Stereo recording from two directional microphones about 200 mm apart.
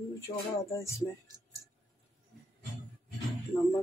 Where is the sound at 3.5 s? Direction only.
10° left (ahead or behind).